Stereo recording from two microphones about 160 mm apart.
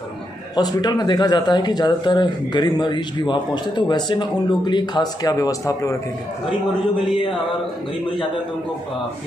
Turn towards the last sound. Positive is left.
turn(degrees=30)  # may be behind; listen again after turning